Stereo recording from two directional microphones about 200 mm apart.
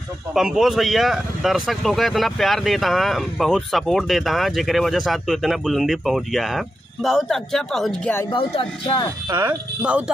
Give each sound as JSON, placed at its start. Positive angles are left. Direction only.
{"t": 0.3, "sound": "speech", "side_deg": 0}
{"t": 8.3, "sound": "music", "side_deg": 25}
{"t": 9.4, "sound": "speech", "side_deg": -10}